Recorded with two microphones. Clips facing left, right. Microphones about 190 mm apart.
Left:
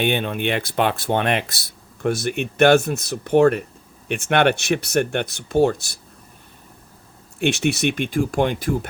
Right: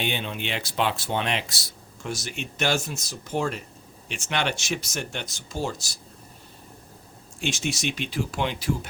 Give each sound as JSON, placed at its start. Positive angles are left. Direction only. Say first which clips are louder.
{"t": 0.0, "sound": "speech", "louder": "left 8 dB", "side_deg": 55}
{"t": 7.3, "sound": "speech", "louder": "left 9 dB", "side_deg": 65}